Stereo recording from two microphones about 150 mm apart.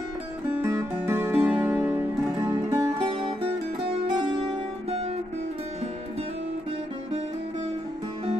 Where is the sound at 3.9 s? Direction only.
30° right (ahead or behind).